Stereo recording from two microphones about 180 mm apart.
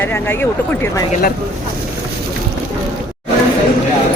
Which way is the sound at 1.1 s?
55° left (ahead or behind).